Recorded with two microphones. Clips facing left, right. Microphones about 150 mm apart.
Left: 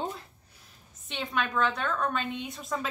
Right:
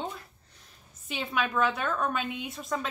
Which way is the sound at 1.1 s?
5° right (ahead or behind).